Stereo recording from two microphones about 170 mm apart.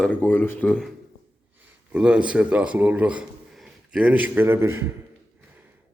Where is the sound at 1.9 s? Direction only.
5° right (ahead or behind).